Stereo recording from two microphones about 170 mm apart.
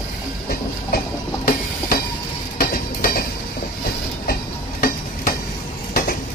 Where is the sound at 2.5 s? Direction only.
60° left (ahead or behind).